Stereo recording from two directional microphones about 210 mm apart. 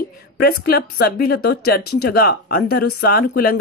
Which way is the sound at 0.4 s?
50° left (ahead or behind).